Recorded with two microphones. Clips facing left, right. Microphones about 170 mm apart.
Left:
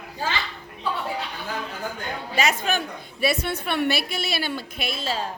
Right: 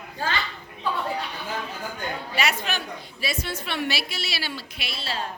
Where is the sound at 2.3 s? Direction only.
50° left (ahead or behind).